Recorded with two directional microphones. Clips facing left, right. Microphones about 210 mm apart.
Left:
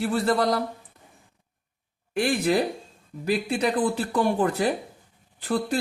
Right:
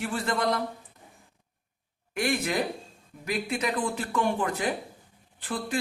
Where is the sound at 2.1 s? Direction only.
35° left (ahead or behind).